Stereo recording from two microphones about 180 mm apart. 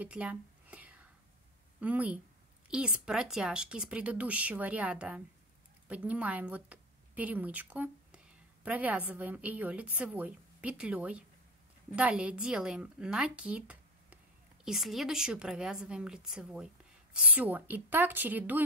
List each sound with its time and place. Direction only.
0.0 s whispering: 5° right (ahead or behind)
1.8 s a woman's voice: 10° right (ahead or behind)